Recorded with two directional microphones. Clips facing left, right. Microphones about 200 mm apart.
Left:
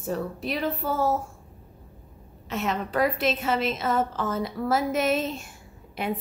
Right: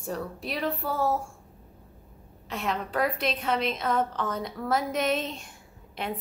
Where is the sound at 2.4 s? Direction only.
Centre (ahead or behind).